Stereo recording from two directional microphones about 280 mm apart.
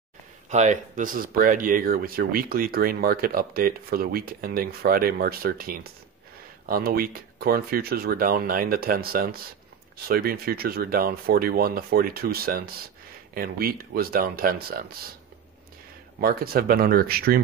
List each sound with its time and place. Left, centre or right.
0.5 s speech: right
16.2 s speech: right